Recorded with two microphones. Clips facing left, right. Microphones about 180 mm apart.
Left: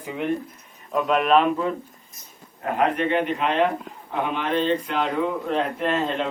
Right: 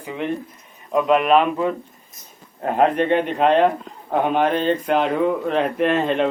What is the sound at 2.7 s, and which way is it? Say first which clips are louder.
A man's voice: right 4 dB; 35° right (ahead or behind).